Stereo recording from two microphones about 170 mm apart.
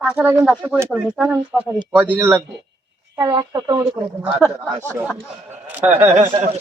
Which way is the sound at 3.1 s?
25° right (ahead or behind).